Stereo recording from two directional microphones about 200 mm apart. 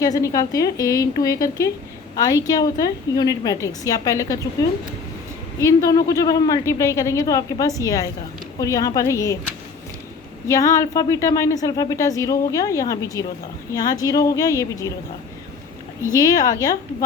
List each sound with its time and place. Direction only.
0.0 s a woman's voice: 15° left (ahead or behind)
5.5 s speech: 15° left (ahead or behind)
10.5 s speech: 15° left (ahead or behind)
16.1 s speech: 15° left (ahead or behind)